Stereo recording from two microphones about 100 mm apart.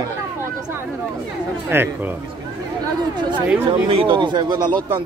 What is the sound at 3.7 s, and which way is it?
Speech, 60° right (ahead or behind).